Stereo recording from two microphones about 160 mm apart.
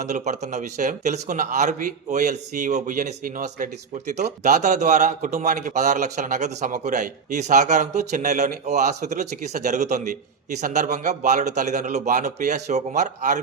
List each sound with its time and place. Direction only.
0.1 s a man's voice: 45° right (ahead or behind)